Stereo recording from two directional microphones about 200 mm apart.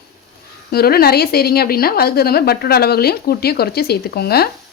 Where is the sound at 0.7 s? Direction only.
50° left (ahead or behind).